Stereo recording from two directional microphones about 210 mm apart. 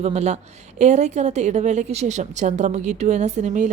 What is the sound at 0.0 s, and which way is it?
A woman's voice, 30° right (ahead or behind).